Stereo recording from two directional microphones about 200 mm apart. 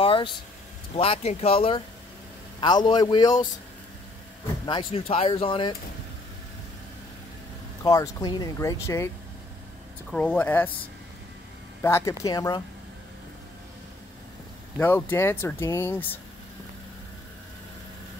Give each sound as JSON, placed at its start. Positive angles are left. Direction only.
{"t": 0.0, "sound": "vehicle", "side_deg": 25}
{"t": 0.9, "sound": "speech", "side_deg": 30}
{"t": 4.6, "sound": "speech", "side_deg": 25}
{"t": 7.8, "sound": "speech", "side_deg": 15}
{"t": 10.1, "sound": "speech", "side_deg": 5}
{"t": 11.8, "sound": "speech", "side_deg": 15}
{"t": 14.8, "sound": "speech", "side_deg": 10}